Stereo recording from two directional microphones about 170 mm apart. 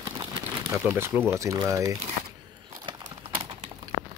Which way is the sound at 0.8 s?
15° right (ahead or behind).